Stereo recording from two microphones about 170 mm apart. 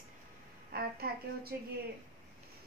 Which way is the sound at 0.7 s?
60° right (ahead or behind).